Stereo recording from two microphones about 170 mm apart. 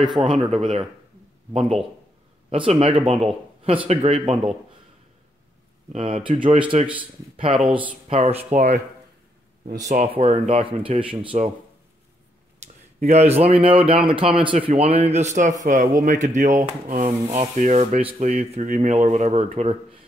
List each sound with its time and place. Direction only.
0.3 s speech: 35° right (ahead or behind)
5.9 s speech: 30° right (ahead or behind)
7.5 s speech: 40° right (ahead or behind)
13.0 s speech: 40° right (ahead or behind)